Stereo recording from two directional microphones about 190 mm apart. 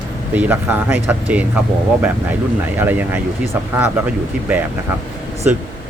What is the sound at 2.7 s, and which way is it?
Speech, 10° right (ahead or behind).